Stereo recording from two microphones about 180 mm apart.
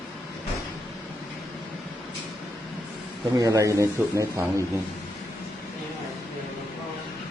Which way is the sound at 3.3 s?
20° right (ahead or behind).